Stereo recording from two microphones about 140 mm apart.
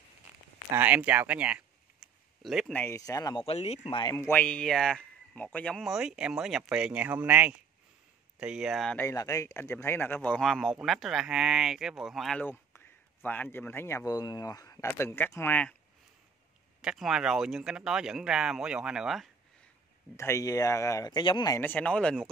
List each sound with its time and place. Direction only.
0.7 s a sound: 10° right (ahead or behind)
2.7 s speech: 15° left (ahead or behind)
3.0 s speech: 25° left (ahead or behind)
3.4 s speech: 50° left (ahead or behind)
3.9 s speech: 25° left (ahead or behind)
4.4 s speech: 10° left (ahead or behind)
8.9 s speech: 20° left (ahead or behind)
10.4 s speech: centre (ahead or behind)
12.4 s a man's voice: 15° left (ahead or behind)
16.8 s speech: 5° right (ahead or behind)
20.2 s speech: 20° left (ahead or behind)
21.5 s speech: 10° left (ahead or behind)